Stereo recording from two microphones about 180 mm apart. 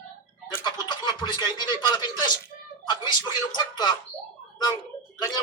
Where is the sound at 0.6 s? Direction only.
25° left (ahead or behind).